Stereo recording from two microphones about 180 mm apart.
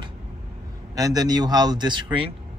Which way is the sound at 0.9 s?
20° right (ahead or behind).